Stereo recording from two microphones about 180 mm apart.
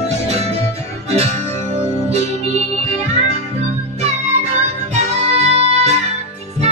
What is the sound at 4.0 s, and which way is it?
Music, 35° right (ahead or behind).